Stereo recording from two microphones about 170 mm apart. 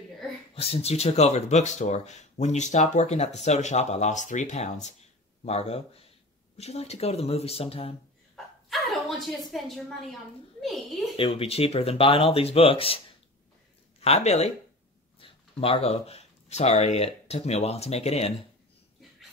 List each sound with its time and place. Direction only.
0.6 s speech: 35° left (ahead or behind)
8.6 s a child's voice: centre (ahead or behind)
11.1 s speech: 35° left (ahead or behind)
14.0 s speech: 40° left (ahead or behind)